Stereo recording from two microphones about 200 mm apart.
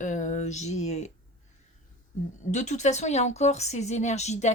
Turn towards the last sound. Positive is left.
turn(degrees=35)  # may be behind; listen again after turning